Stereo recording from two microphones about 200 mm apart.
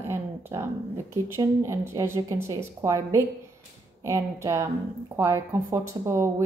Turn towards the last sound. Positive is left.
turn(degrees=-15)  # may be behind; listen again after turning